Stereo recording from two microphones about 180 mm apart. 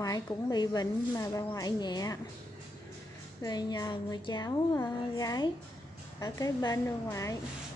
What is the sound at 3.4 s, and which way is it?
A woman's voice, 25° left (ahead or behind).